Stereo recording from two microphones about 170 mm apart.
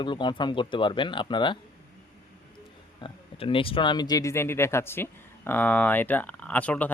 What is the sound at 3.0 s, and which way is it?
Speech, 30° left (ahead or behind).